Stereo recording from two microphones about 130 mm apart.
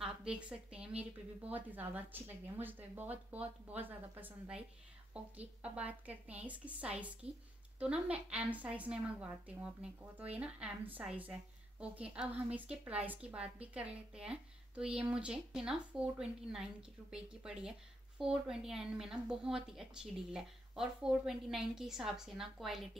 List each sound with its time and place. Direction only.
0.0 s a woman's voice: 10° right (ahead or behind)
7.2 s a woman's voice: 50° right (ahead or behind)
7.8 s a woman's voice: 10° right (ahead or behind)